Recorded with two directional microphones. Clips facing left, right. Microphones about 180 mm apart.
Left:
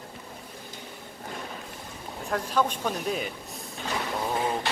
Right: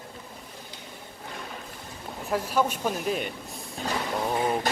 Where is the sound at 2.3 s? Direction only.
5° right (ahead or behind).